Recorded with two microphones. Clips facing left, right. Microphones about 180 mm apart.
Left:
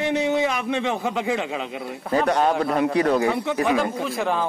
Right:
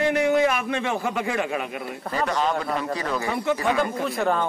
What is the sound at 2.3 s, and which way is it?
Speech, 60° left (ahead or behind).